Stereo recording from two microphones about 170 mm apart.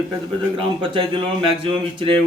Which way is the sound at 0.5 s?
30° right (ahead or behind).